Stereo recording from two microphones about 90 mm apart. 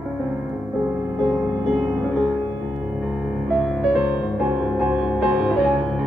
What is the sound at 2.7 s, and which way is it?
Music, 15° right (ahead or behind).